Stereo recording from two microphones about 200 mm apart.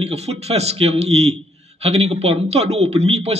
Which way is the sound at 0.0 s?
30° right (ahead or behind).